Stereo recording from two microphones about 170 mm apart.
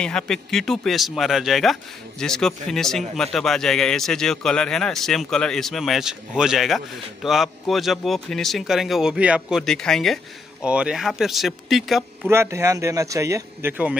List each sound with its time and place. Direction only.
0.0 s speech: 5° left (ahead or behind)
12.3 s speech: 15° right (ahead or behind)